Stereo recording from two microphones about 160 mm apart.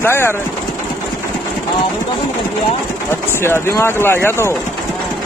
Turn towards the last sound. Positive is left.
turn(degrees=15)  # may be behind; listen again after turning